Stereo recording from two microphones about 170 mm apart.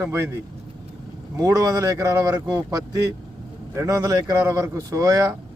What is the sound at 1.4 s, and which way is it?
Speech, 20° right (ahead or behind).